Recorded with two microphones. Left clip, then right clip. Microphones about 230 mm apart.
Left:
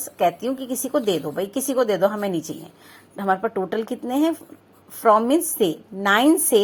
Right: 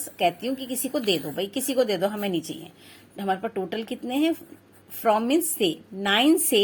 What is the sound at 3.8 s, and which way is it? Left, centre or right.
Speech, centre.